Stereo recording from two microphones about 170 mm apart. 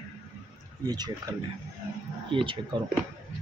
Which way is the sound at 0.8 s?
25° right (ahead or behind).